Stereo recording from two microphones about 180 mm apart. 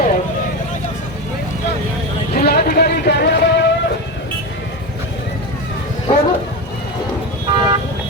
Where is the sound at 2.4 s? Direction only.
60° left (ahead or behind).